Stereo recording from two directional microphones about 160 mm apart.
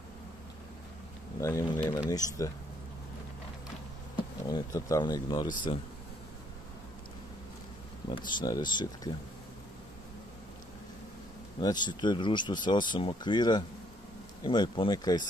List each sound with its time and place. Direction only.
1.4 s speech: 20° left (ahead or behind)
4.5 s speech: 20° left (ahead or behind)
8.3 s speech: 30° left (ahead or behind)
11.6 s speech: 25° left (ahead or behind)